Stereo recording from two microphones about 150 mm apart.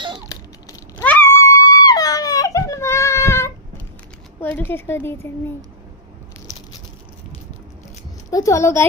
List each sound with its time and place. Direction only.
0.3 s a sound: 20° left (ahead or behind)
4.4 s a woman's voice: 15° left (ahead or behind)
8.3 s a woman's voice: 20° left (ahead or behind)